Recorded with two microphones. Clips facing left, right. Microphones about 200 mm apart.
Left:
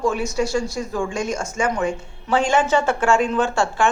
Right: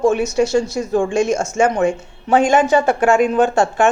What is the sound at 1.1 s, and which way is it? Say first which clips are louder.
Speech: right 8 dB; 75° right (ahead or behind).